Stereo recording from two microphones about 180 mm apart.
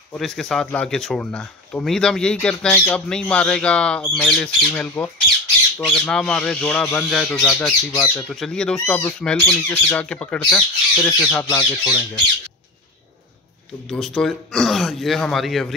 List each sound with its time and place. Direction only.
0.1 s speech: 5° left (ahead or behind)
11.4 s speech: 20° left (ahead or behind)
13.8 s speech: centre (ahead or behind)